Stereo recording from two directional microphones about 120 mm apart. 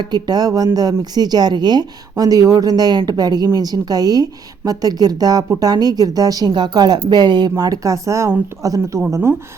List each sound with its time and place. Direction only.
0.0 s speech: 35° right (ahead or behind)